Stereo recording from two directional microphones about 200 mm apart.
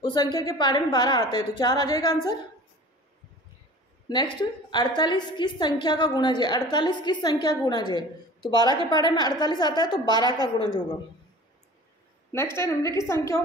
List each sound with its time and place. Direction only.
0.0 s a woman's voice: 20° left (ahead or behind)
4.4 s a woman's voice: 20° left (ahead or behind)
10.4 s a woman's voice: 20° right (ahead or behind)
12.5 s a woman's voice: 15° left (ahead or behind)